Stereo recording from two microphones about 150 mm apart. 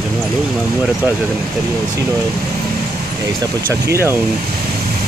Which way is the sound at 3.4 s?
20° right (ahead or behind).